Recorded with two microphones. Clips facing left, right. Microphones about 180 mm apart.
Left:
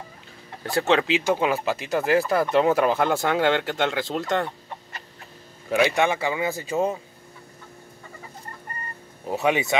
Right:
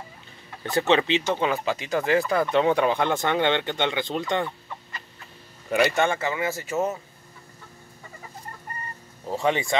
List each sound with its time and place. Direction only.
0.7 s speech: centre (ahead or behind)
5.7 s speech: centre (ahead or behind)
6.1 s speech: 15° left (ahead or behind)
9.4 s speech: 10° left (ahead or behind)